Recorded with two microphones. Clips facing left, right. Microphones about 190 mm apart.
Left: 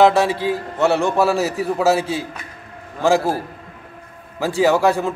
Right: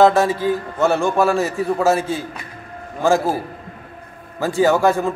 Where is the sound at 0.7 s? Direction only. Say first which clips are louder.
Left 1 dB; centre (ahead or behind).